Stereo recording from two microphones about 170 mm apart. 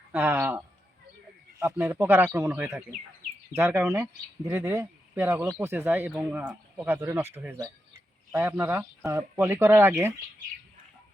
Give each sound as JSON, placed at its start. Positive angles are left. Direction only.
{"t": 0.1, "sound": "speech", "side_deg": -15}